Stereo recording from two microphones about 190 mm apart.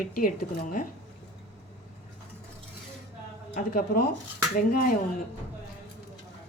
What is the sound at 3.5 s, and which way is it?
A woman's voice, 50° left (ahead or behind).